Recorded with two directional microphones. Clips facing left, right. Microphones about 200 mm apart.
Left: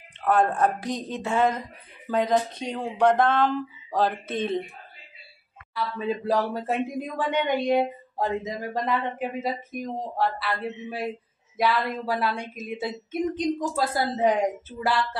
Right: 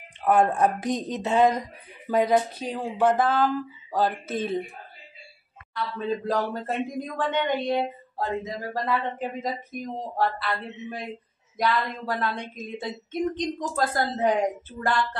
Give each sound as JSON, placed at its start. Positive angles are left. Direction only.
{"t": 0.2, "sound": "a woman's voice", "side_deg": -10}
{"t": 5.9, "sound": "speech", "side_deg": 10}
{"t": 10.1, "sound": "speech", "side_deg": 0}